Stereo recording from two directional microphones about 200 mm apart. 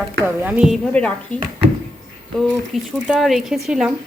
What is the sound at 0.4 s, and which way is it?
Speech, 5° right (ahead or behind).